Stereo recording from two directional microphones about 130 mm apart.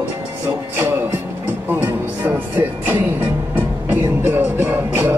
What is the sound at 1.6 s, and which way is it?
Music, 15° right (ahead or behind).